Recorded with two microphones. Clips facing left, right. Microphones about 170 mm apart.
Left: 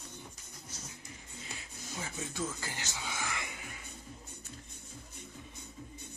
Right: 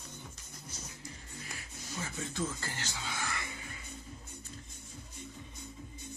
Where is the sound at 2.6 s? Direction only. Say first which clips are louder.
Even; 15° left (ahead or behind).